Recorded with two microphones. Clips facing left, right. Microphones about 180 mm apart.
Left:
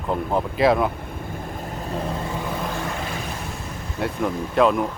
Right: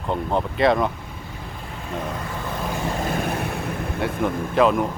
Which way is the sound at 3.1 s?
55° right (ahead or behind).